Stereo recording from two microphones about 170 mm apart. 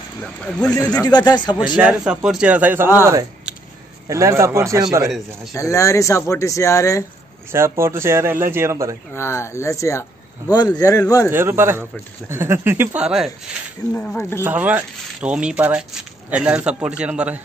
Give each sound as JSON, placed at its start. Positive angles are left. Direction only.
{"t": 0.2, "sound": "a man's voice", "side_deg": 5}
{"t": 1.0, "sound": "speech", "side_deg": 25}
{"t": 1.8, "sound": "speech", "side_deg": -5}
{"t": 5.0, "sound": "a man's voice", "side_deg": 0}
{"t": 5.6, "sound": "speech", "side_deg": 20}
{"t": 7.5, "sound": "speech", "side_deg": -15}
{"t": 9.1, "sound": "speech", "side_deg": 15}
{"t": 11.2, "sound": "speech", "side_deg": -15}
{"t": 13.8, "sound": "speech", "side_deg": 20}
{"t": 14.4, "sound": "speech", "side_deg": -10}